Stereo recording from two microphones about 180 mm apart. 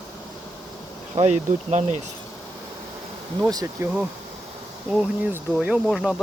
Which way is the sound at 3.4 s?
20° right (ahead or behind).